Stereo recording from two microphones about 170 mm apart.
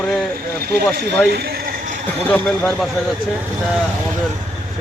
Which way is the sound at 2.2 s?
5° left (ahead or behind).